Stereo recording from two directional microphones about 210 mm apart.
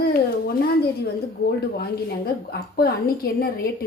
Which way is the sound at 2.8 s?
45° left (ahead or behind).